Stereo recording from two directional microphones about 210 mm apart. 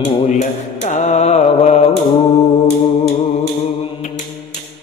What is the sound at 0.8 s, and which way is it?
Mantra, 35° left (ahead or behind).